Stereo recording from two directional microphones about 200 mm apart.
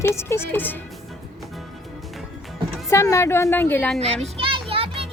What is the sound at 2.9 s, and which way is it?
A woman's voice, 15° left (ahead or behind).